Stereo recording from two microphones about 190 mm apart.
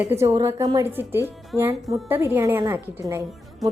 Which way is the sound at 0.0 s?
15° right (ahead or behind).